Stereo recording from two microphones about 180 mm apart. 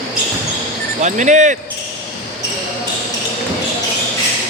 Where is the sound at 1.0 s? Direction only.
40° right (ahead or behind).